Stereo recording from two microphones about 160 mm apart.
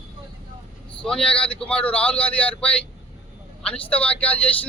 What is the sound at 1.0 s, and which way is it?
Speech, 5° left (ahead or behind).